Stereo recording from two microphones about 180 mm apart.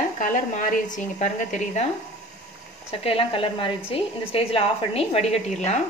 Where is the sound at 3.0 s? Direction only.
30° left (ahead or behind).